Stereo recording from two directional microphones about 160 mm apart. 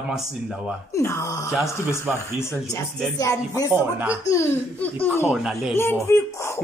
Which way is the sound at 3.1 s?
20° left (ahead or behind).